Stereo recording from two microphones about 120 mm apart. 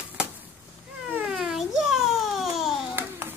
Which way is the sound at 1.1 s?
5° right (ahead or behind).